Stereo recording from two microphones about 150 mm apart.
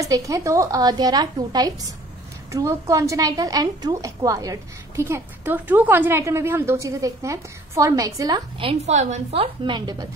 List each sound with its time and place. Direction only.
0.0 s a woman's voice: 20° right (ahead or behind)
8.5 s a woman's voice: 35° right (ahead or behind)
8.9 s a woman's voice: 50° right (ahead or behind); by 10.0 s 30° right (ahead or behind)